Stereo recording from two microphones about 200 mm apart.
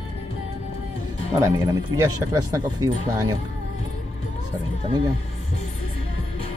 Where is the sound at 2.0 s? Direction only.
20° right (ahead or behind).